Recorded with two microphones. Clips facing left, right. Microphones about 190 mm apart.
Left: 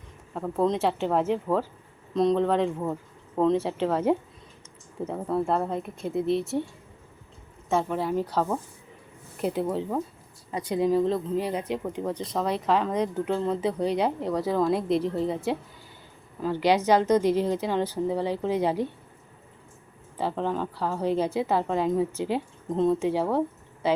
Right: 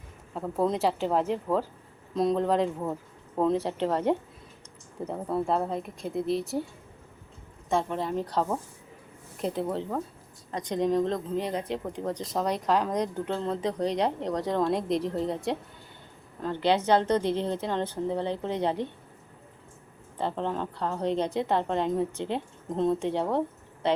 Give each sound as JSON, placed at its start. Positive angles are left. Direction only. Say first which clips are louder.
{"t": 0.3, "sound": "speech", "louder": "left 2 dB", "side_deg": 0}
{"t": 7.7, "sound": "a woman's voice", "louder": "left 2 dB", "side_deg": 5}
{"t": 20.1, "sound": "speech", "louder": "left 2 dB", "side_deg": 5}